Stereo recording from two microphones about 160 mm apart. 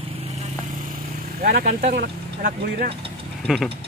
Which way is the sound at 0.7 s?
60° right (ahead or behind).